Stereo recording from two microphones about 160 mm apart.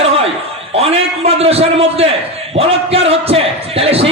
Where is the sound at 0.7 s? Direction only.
40° right (ahead or behind).